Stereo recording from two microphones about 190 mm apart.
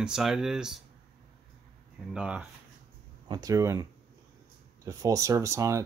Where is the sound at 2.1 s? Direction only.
5° right (ahead or behind).